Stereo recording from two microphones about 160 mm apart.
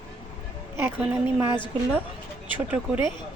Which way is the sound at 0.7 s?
15° right (ahead or behind).